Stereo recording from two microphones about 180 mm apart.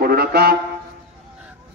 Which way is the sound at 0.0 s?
60° right (ahead or behind).